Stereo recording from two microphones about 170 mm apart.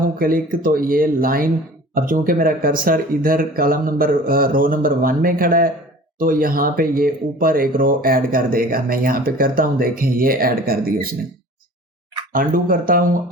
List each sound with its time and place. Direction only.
0.2 s speech: 55° right (ahead or behind)
12.3 s speech: 55° right (ahead or behind)